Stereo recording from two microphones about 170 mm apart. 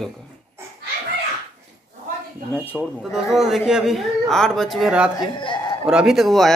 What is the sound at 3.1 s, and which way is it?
Speech, centre (ahead or behind).